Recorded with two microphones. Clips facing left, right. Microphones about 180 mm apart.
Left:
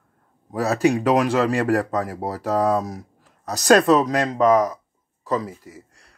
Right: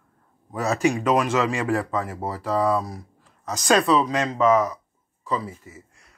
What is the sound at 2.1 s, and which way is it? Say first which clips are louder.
Speech: left 2 dB; 40° left (ahead or behind).